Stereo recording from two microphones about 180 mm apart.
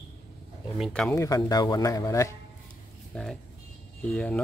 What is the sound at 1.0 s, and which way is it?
Speech, 15° left (ahead or behind).